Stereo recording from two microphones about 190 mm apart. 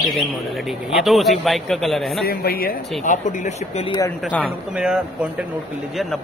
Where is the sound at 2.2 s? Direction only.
55° left (ahead or behind).